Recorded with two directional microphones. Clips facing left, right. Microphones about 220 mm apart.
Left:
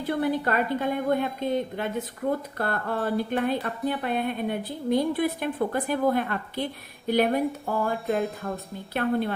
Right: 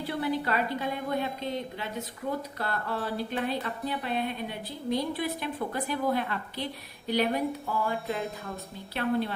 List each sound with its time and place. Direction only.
0.0 s a woman's voice: 50° left (ahead or behind)
8.0 s speech: centre (ahead or behind)
8.9 s a woman's voice: 50° left (ahead or behind)